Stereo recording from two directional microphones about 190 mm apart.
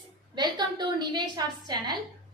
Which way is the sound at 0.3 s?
25° right (ahead or behind).